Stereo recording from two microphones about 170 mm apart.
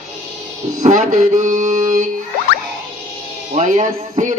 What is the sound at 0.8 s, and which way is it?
Speech, 45° right (ahead or behind).